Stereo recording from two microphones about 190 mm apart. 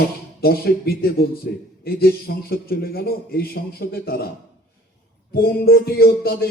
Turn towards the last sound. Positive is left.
turn(degrees=55)  # may be behind; listen again after turning